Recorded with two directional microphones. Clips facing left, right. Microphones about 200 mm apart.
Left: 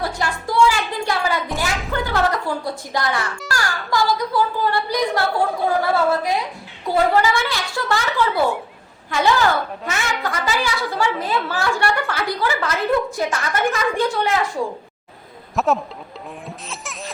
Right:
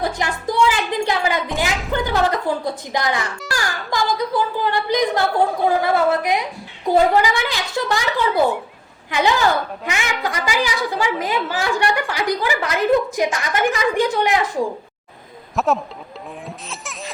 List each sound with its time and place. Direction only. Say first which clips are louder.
0.0 s music: right 2 dB; 20° right (ahead or behind)
1.0 s a woman's voice: right 1 dB; 20° right (ahead or behind)
15.5 s a man's voice: even; centre (ahead or behind)
16.5 s baby laughter: even; centre (ahead or behind)